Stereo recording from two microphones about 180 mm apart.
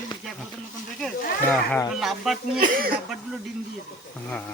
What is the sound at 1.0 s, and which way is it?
Speech, 5° left (ahead or behind).